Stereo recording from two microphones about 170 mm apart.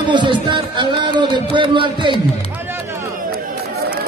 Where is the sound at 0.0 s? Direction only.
25° right (ahead or behind).